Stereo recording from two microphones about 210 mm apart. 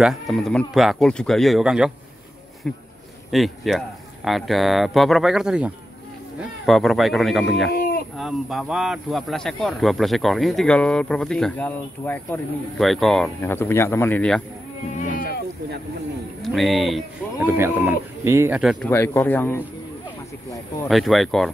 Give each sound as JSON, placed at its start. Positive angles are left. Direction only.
{"t": 0.0, "sound": "speech", "side_deg": 0}
{"t": 7.7, "sound": "a sound", "side_deg": 45}
{"t": 8.2, "sound": "speech", "side_deg": 0}
{"t": 16.4, "sound": "speech", "side_deg": 0}
{"t": 17.5, "sound": "speech", "side_deg": -10}
{"t": 18.6, "sound": "speech", "side_deg": 0}
{"t": 18.9, "sound": "speech", "side_deg": 10}
{"t": 20.9, "sound": "speech", "side_deg": 0}